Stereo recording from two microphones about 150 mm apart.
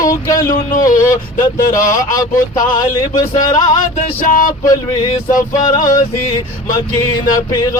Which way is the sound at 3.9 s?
60° left (ahead or behind).